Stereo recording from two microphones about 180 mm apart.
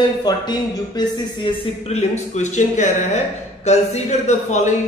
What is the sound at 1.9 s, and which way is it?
A man's voice, 40° left (ahead or behind).